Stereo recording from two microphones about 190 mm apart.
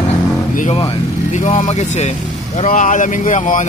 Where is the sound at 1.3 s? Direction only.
40° left (ahead or behind).